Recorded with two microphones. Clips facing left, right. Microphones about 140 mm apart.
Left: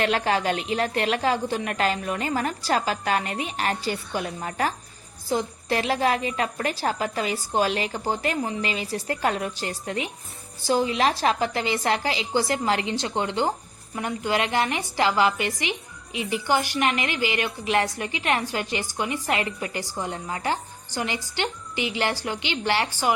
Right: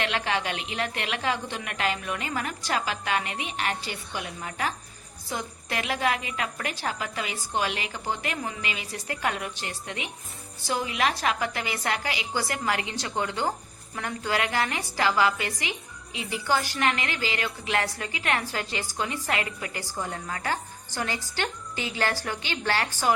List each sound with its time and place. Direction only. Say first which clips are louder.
0.0 s a woman's voice: left 5 dB; 40° left (ahead or behind); by 23.1 s 10° left (ahead or behind)